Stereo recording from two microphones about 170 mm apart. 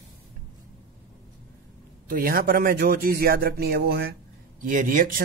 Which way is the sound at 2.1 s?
60° right (ahead or behind).